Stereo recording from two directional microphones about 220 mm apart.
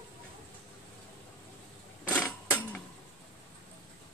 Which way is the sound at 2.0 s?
5° left (ahead or behind).